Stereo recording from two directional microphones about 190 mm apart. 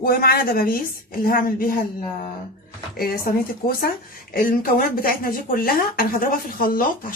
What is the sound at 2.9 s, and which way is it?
Speech, 50° left (ahead or behind).